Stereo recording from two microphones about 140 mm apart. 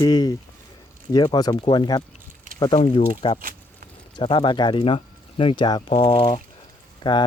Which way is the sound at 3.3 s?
90° right.